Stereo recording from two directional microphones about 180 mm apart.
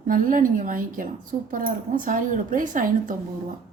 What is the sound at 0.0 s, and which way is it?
Speech, 50° right (ahead or behind).